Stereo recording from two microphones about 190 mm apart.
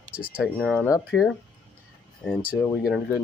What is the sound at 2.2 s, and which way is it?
Speech, 5° left (ahead or behind).